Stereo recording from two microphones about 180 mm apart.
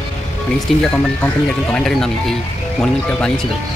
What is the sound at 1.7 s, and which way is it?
Speech, 5° left (ahead or behind).